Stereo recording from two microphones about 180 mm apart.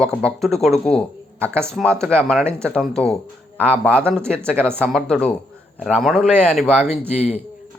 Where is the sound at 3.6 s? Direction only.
10° right (ahead or behind).